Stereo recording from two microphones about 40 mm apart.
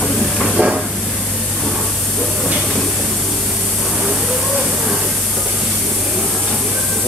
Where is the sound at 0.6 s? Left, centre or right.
Right.